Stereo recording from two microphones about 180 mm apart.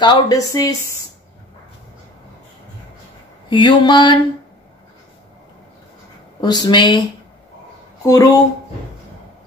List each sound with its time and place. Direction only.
0.0 s a woman's voice: 20° left (ahead or behind)
3.4 s a woman's voice: 25° left (ahead or behind)
6.4 s a woman's voice: 25° left (ahead or behind)
8.0 s speech: 20° left (ahead or behind)